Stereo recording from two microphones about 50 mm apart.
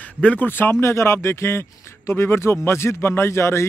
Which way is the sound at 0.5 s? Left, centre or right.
Left.